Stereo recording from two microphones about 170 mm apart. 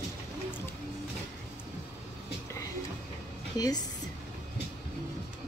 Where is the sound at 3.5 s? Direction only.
20° left (ahead or behind).